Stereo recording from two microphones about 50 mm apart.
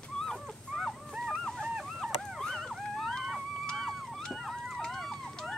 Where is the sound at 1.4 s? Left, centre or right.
Centre.